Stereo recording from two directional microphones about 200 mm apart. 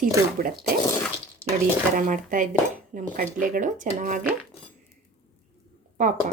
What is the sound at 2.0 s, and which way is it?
Speech, 40° right (ahead or behind).